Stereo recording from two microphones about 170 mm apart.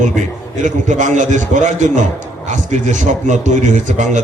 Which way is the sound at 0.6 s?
45° right (ahead or behind).